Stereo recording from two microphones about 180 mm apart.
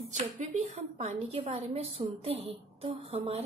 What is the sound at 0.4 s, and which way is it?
Speech, 40° right (ahead or behind).